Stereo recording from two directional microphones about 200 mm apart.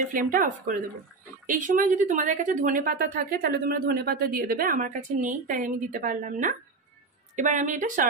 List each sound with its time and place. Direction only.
0.1 s a woman's voice: 45° right (ahead or behind)